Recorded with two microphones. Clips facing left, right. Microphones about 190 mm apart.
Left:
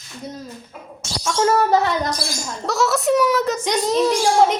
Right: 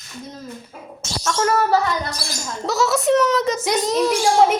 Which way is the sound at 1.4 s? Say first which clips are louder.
Left 2 dB; 20° left (ahead or behind).